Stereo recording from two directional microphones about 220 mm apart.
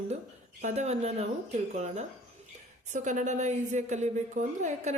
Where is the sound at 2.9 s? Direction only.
35° right (ahead or behind).